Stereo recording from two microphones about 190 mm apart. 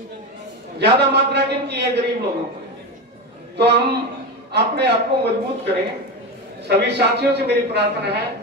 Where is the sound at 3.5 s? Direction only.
60° right (ahead or behind).